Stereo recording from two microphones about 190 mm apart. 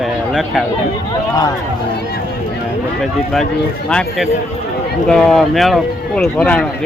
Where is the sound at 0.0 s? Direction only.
Centre (ahead or behind).